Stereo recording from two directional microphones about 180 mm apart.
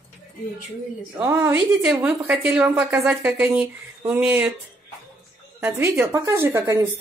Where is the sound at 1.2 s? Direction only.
10° right (ahead or behind).